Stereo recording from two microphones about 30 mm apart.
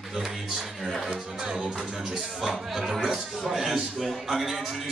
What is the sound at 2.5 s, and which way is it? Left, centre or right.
A man's voice, centre.